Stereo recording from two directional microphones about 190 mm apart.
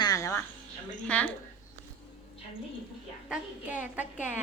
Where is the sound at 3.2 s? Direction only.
5° right (ahead or behind).